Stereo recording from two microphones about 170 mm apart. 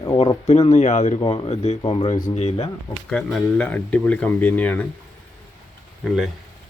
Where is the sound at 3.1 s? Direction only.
5° left (ahead or behind).